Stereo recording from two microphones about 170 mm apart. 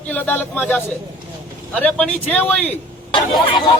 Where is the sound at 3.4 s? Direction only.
30° left (ahead or behind).